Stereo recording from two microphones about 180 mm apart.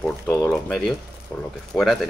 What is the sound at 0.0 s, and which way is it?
Speech, 5° left (ahead or behind).